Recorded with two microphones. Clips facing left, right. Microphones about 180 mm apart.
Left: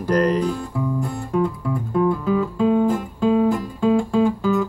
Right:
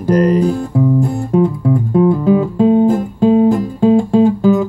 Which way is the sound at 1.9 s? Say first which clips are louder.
Right 7 dB; 20° right (ahead or behind).